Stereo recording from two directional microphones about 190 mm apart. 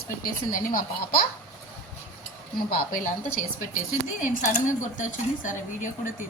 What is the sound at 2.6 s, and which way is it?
Speech, 50° left (ahead or behind).